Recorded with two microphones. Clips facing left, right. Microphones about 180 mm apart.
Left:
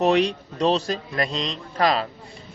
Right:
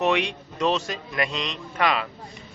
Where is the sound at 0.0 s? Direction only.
35° left (ahead or behind).